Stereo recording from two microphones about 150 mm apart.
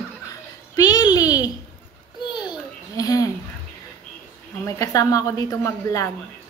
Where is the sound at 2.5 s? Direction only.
25° left (ahead or behind).